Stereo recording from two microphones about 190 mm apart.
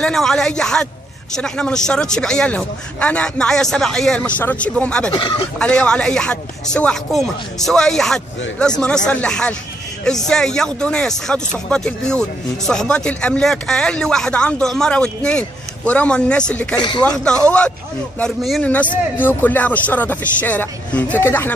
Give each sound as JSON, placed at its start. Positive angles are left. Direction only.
{"t": 0.0, "sound": "speech", "side_deg": 5}
{"t": 5.1, "sound": "speech", "side_deg": 25}
{"t": 5.6, "sound": "speech", "side_deg": 5}